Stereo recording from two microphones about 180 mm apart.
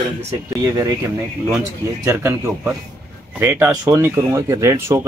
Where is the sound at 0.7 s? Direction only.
20° right (ahead or behind).